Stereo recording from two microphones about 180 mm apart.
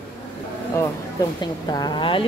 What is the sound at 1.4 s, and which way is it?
Speech, 25° left (ahead or behind).